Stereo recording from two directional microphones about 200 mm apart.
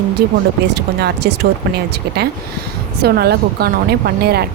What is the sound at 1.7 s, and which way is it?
Speech, 50° right (ahead or behind).